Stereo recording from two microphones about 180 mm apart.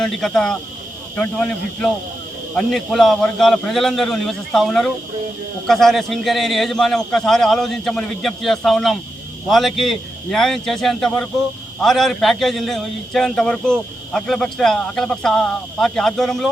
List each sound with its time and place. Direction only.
0.0 s a man's voice: 5° left (ahead or behind)